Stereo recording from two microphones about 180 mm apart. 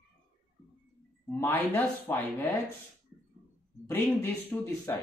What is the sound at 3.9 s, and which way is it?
Speech, 10° left (ahead or behind).